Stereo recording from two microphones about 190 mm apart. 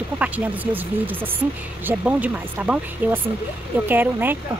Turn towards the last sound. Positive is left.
turn(degrees=-10)  # may be behind; listen again after turning